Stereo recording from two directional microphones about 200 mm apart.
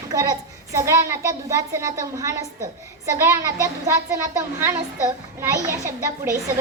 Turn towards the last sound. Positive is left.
turn(degrees=-15)  # may be behind; listen again after turning